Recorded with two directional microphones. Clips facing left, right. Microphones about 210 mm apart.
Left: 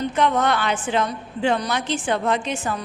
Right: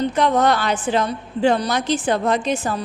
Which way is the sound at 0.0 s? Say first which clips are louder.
Right 3 dB; 35° right (ahead or behind).